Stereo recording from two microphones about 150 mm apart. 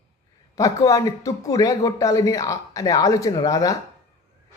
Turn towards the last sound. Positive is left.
turn(degrees=25)  # may be behind; listen again after turning